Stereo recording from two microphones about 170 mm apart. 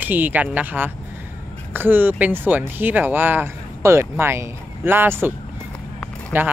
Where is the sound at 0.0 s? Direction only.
10° right (ahead or behind).